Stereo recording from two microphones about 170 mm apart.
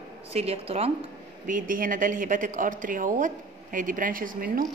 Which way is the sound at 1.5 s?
55° right (ahead or behind).